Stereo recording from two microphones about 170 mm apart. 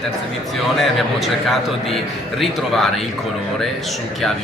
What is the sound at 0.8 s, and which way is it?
A man's voice, centre (ahead or behind).